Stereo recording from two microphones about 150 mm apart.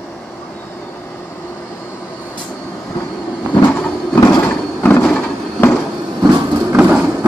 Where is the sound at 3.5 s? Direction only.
15° left (ahead or behind).